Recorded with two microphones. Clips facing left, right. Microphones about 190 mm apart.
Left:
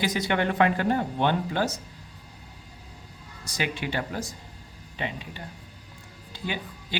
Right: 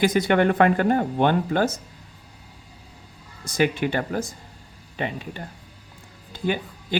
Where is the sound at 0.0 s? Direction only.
50° right (ahead or behind).